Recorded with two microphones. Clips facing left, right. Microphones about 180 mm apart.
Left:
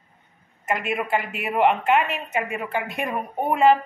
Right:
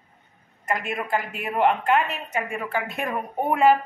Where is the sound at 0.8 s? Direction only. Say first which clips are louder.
Left 2 dB; 10° left (ahead or behind).